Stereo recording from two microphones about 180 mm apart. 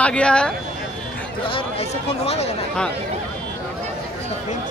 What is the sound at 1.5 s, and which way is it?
Speech, 30° left (ahead or behind).